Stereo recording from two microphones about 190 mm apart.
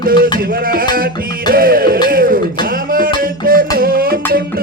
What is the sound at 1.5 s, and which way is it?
Music, 50° right (ahead or behind).